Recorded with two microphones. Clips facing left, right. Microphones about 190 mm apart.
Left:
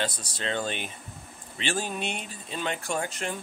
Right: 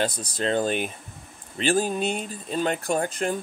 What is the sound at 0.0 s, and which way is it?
Speech, 40° right (ahead or behind).